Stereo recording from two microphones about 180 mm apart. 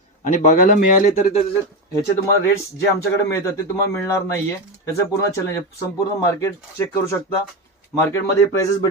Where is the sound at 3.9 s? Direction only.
15° left (ahead or behind).